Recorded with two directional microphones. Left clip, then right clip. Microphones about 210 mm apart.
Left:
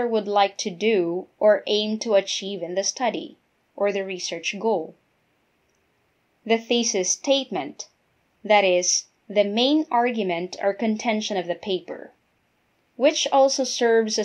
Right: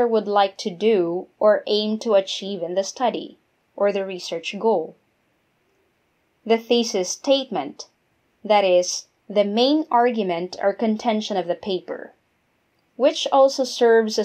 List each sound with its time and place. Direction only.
0.0 s speech: 20° right (ahead or behind)
6.4 s speech: 20° right (ahead or behind)